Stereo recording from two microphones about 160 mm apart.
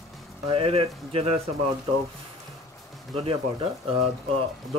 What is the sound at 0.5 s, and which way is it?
Speech, 35° right (ahead or behind).